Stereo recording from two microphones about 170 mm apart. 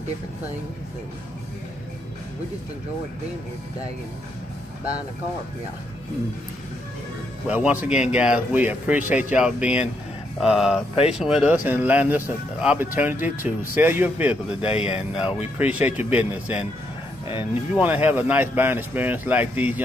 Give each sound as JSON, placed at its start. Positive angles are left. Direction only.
{"t": 7.4, "sound": "speech", "side_deg": -10}
{"t": 10.4, "sound": "a sound", "side_deg": -5}
{"t": 11.1, "sound": "speech", "side_deg": -5}
{"t": 14.7, "sound": "speech", "side_deg": 35}
{"t": 15.0, "sound": "a sound", "side_deg": -5}
{"t": 15.5, "sound": "speech", "side_deg": -10}